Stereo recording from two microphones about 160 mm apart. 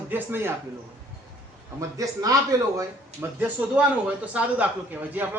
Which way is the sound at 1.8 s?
20° right (ahead or behind).